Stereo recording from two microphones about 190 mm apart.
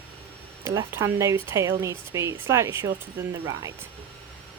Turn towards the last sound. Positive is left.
turn(degrees=-20)  # may be behind; listen again after turning